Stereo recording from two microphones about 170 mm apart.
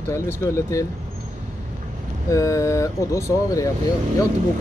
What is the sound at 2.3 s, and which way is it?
Speech, 20° left (ahead or behind).